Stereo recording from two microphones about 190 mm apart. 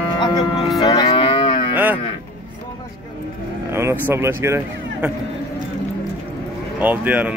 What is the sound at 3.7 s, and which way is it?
Speech, 15° right (ahead or behind).